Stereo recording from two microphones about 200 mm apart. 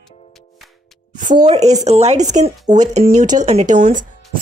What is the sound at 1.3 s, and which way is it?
Speech, 20° right (ahead or behind).